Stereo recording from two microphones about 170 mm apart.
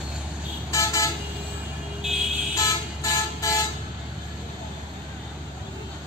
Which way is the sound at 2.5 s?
20° left (ahead or behind).